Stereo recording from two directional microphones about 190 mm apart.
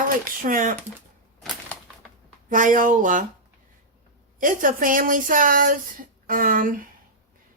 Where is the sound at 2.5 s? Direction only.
45° right (ahead or behind).